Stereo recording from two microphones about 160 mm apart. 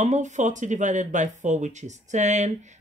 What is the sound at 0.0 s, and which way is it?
Speech, 50° right (ahead or behind).